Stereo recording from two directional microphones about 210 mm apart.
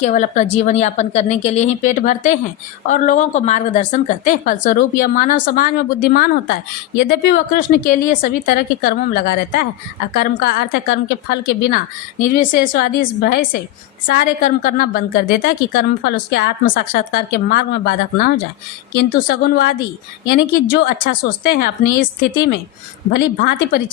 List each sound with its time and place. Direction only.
0.0 s a woman's voice: 35° left (ahead or behind)
23.1 s a woman's voice: 50° left (ahead or behind)